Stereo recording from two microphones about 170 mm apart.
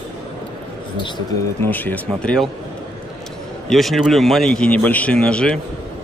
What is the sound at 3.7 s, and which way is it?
Speech, centre (ahead or behind).